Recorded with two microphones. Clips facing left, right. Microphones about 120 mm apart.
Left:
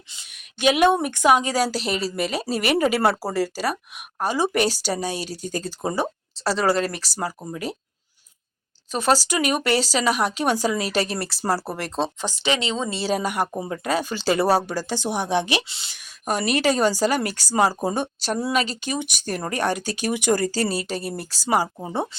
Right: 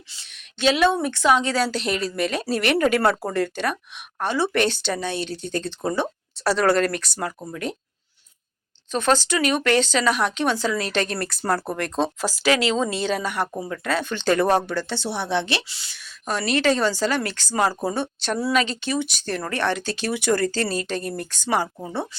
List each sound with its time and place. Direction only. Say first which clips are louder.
0.1 s a woman's voice: even; 15° left (ahead or behind)
6.4 s speech: right 2 dB; centre (ahead or behind)
8.9 s a woman's voice: even; 10° left (ahead or behind)
12.9 s speech: even; 35° left (ahead or behind)
13.2 s a woman's voice: left 1 dB; 10° left (ahead or behind)
13.6 s speech: left 1 dB; 25° left (ahead or behind)
13.9 s a woman's voice: right 1 dB; 10° left (ahead or behind)
18.5 s speech: right 3 dB; 40° left (ahead or behind)
18.9 s a woman's voice: right 2 dB; 15° left (ahead or behind)
21.8 s speech: left 2 dB; 25° left (ahead or behind)